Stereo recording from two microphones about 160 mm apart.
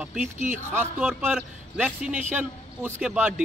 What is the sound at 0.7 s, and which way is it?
Speech, 5° right (ahead or behind).